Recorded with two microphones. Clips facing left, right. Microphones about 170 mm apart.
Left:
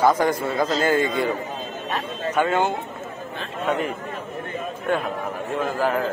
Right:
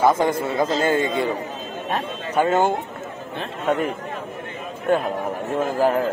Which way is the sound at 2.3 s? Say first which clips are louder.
Right 3 dB; 40° right (ahead or behind).